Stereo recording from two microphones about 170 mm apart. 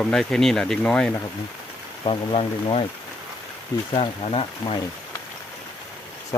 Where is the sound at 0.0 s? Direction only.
5° left (ahead or behind).